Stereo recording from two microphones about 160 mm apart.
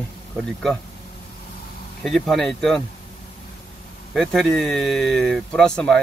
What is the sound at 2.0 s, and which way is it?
Speech, centre (ahead or behind).